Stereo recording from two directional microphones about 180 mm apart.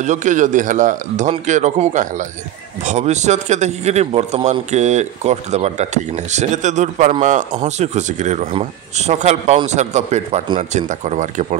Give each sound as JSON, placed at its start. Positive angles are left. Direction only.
{"t": 0.0, "sound": "a man's voice", "side_deg": -45}